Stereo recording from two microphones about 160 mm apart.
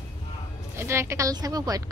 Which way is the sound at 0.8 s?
15° right (ahead or behind).